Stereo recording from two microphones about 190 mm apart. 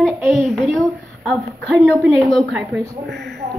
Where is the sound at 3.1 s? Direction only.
60° right (ahead or behind).